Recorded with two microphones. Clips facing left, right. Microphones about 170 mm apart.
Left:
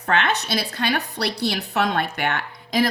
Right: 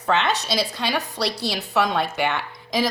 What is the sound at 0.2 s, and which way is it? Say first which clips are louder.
A woman's voice: even; 60° left (ahead or behind).